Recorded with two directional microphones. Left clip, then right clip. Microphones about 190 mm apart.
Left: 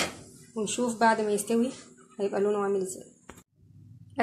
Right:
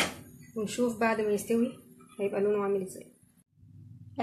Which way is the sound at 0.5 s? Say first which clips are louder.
Left 2 dB; 20° left (ahead or behind).